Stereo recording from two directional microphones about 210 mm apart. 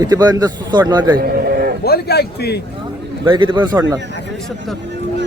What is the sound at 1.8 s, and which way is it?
Speech, 50° left (ahead or behind).